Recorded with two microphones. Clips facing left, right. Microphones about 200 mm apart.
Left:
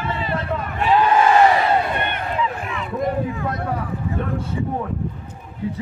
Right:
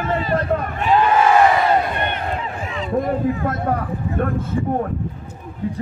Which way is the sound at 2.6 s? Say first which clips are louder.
Right 2 dB; 60° left (ahead or behind).